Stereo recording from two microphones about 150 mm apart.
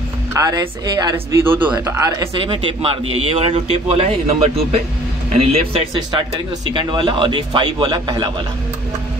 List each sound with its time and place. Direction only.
0.3 s speech: 25° right (ahead or behind)
1.1 s a man's voice: 15° right (ahead or behind)
1.8 s speech: 25° right (ahead or behind)
2.3 s speech: 35° right (ahead or behind)